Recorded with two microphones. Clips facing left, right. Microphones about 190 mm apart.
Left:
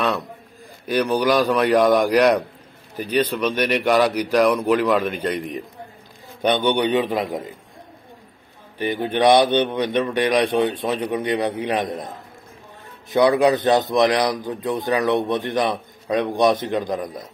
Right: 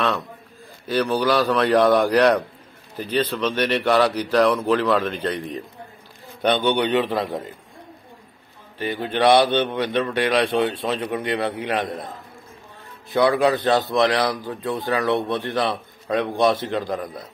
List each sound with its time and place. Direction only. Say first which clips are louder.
0.8 s a man's voice: left 1 dB; 15° left (ahead or behind)
8.7 s a man's voice: left 2 dB; 20° left (ahead or behind)
13.1 s a man's voice: left 2 dB; 20° left (ahead or behind)